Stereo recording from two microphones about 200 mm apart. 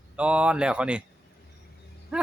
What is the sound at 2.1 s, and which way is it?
Roaring cats, 5° right (ahead or behind).